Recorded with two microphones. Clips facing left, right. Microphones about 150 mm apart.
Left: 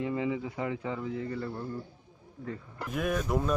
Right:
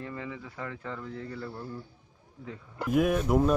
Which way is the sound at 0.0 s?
15° left (ahead or behind).